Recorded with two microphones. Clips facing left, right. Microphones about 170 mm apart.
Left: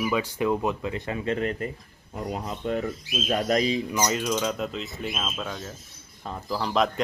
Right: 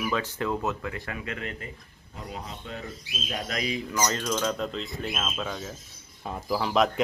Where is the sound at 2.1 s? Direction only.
50° left (ahead or behind).